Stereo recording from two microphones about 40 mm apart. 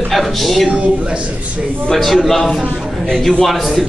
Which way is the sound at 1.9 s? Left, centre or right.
Centre.